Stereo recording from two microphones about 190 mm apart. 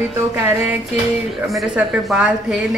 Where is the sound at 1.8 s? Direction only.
5° right (ahead or behind).